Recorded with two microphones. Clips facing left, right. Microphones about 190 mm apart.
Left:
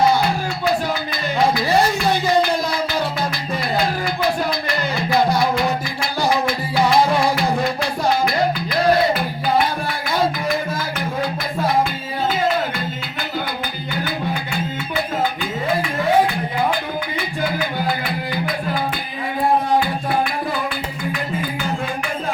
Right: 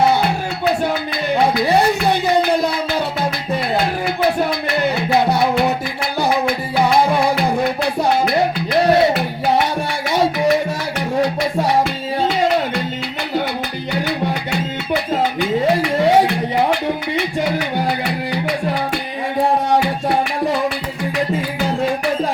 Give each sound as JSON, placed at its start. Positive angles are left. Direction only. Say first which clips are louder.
{"t": 0.2, "sound": "music", "louder": "right 1 dB", "side_deg": -65}
{"t": 3.8, "sound": "a sound", "louder": "even", "side_deg": -65}
{"t": 5.1, "sound": "music", "louder": "right 1 dB", "side_deg": -65}
{"t": 6.7, "sound": "music", "louder": "right 1 dB", "side_deg": -60}
{"t": 14.5, "sound": "music", "louder": "right 3 dB", "side_deg": -75}